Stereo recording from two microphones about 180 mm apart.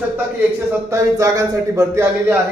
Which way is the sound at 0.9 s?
15° right (ahead or behind).